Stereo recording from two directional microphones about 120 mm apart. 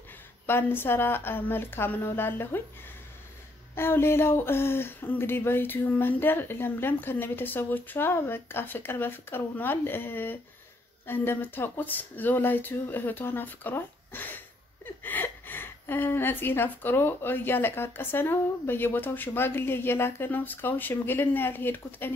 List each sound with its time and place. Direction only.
0.5 s a woman's voice: 20° left (ahead or behind)
3.7 s a woman's voice: 20° left (ahead or behind)